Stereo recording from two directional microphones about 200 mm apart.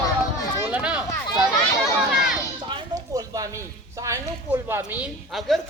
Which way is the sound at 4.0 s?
10° right (ahead or behind).